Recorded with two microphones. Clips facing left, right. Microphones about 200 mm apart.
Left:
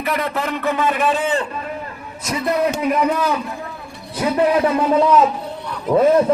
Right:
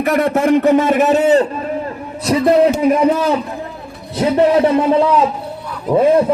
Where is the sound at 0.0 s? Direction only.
50° right (ahead or behind); by 5.3 s 25° right (ahead or behind).